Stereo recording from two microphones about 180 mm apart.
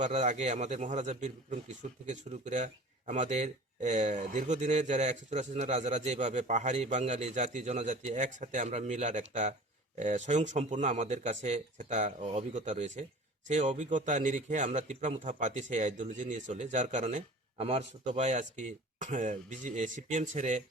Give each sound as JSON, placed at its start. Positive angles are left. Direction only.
{"t": 0.0, "sound": "speech", "side_deg": -40}